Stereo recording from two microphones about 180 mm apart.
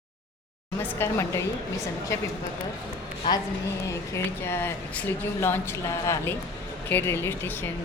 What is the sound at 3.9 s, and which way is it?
Speech, 15° left (ahead or behind).